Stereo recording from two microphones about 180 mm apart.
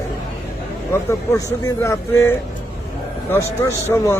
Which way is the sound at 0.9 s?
15° left (ahead or behind).